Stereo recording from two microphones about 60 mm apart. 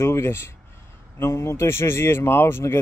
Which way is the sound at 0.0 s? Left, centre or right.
Left.